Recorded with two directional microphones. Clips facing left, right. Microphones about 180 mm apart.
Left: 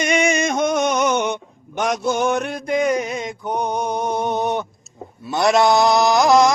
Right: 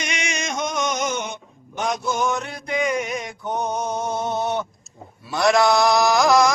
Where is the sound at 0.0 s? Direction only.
55° left (ahead or behind); by 3.3 s 30° left (ahead or behind).